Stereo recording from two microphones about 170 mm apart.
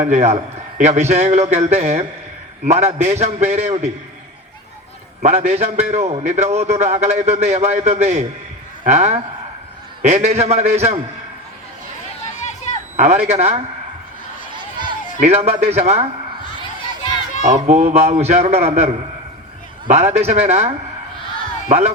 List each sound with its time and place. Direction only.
0.0 s a man's voice: 45° right (ahead or behind)
5.2 s a man's voice: 40° right (ahead or behind)
12.2 s a sound: 40° left (ahead or behind)
13.0 s a man's voice: 45° right (ahead or behind)
15.2 s a man's voice: 40° right (ahead or behind)
17.4 s a man's voice: 45° right (ahead or behind)
19.9 s a man's voice: 40° right (ahead or behind)